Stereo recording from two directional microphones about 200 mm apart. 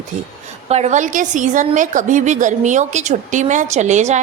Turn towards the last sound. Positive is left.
turn(degrees=-35)  # may be behind; listen again after turning